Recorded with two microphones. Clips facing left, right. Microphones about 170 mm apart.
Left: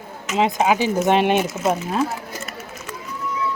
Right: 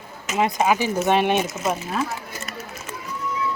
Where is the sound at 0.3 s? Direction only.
20° left (ahead or behind).